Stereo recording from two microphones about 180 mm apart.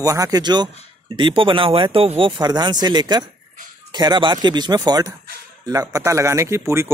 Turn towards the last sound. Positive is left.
turn(degrees=-15)  # may be behind; listen again after turning